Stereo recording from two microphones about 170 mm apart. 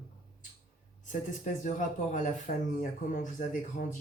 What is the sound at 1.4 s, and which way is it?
Speech, 45° left (ahead or behind).